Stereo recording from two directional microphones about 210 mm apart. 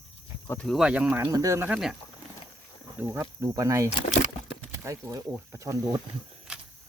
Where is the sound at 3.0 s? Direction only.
10° right (ahead or behind).